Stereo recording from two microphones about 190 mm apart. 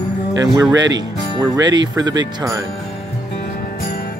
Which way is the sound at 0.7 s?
20° right (ahead or behind).